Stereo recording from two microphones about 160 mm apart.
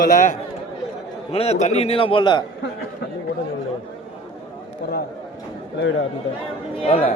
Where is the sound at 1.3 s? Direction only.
40° left (ahead or behind).